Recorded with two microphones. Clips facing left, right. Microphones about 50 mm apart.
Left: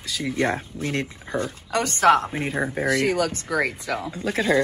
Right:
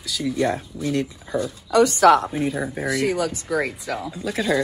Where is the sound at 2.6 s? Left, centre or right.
Left.